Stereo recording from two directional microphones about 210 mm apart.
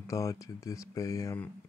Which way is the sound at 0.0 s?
15° left (ahead or behind).